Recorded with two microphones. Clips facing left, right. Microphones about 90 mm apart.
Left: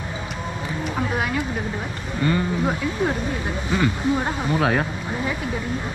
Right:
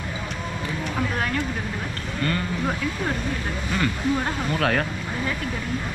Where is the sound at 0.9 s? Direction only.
10° left (ahead or behind).